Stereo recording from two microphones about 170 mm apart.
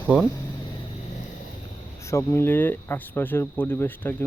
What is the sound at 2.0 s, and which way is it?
Speech, 15° left (ahead or behind).